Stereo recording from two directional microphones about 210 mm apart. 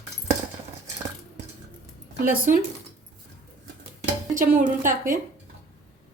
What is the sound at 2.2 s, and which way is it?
Speech, 40° right (ahead or behind).